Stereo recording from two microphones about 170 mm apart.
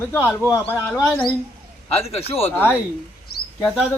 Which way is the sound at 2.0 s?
35° left (ahead or behind).